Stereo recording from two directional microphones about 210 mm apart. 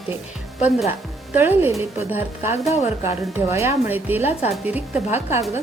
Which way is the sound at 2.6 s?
30° left (ahead or behind).